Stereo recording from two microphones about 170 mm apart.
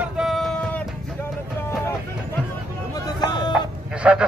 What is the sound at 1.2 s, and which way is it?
Music, 15° left (ahead or behind).